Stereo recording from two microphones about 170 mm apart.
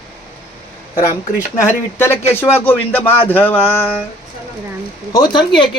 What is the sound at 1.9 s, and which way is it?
Speech, 15° left (ahead or behind).